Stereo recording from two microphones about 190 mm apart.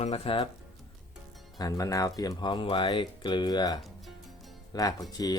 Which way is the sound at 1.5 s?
20° left (ahead or behind).